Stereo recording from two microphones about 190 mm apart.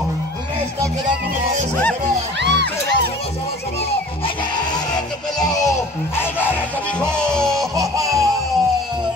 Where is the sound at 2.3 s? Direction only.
65° right (ahead or behind).